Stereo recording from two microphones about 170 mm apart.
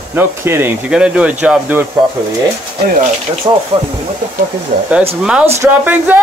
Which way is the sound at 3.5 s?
20° right (ahead or behind).